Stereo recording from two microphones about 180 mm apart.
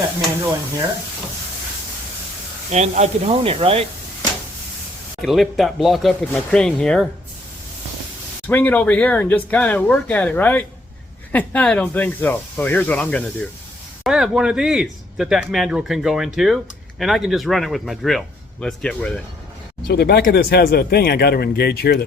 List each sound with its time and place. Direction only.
2.6 s speech: 40° right (ahead or behind)
5.2 s speech: centre (ahead or behind)
8.4 s speech: 10° left (ahead or behind)
19.9 s speech: 60° left (ahead or behind)